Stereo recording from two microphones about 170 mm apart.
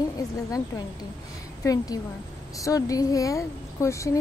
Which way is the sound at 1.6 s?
20° left (ahead or behind).